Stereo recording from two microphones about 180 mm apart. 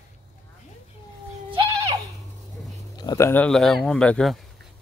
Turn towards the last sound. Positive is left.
turn(degrees=5)  # may be behind; listen again after turning